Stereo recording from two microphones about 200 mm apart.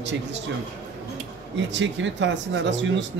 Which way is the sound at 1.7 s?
65° right (ahead or behind).